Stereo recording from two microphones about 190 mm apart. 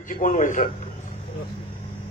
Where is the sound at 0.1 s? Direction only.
40° left (ahead or behind).